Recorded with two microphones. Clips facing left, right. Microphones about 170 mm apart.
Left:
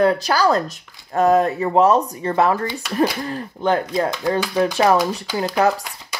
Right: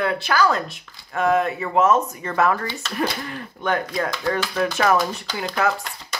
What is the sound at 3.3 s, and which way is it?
Speech, 30° left (ahead or behind).